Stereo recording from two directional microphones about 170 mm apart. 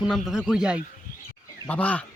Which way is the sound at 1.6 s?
10° left (ahead or behind).